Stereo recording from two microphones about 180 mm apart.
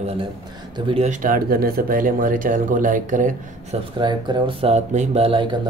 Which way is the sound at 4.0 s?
25° right (ahead or behind).